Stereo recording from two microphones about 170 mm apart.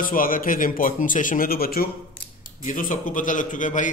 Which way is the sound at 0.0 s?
55° left (ahead or behind).